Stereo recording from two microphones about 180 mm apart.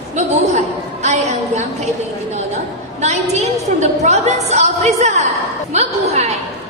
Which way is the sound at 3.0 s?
40° right (ahead or behind).